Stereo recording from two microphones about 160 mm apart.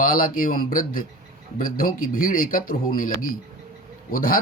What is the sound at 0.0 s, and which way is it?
Speech, 60° left (ahead or behind).